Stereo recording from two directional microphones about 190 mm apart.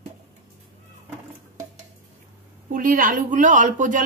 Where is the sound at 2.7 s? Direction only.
45° right (ahead or behind).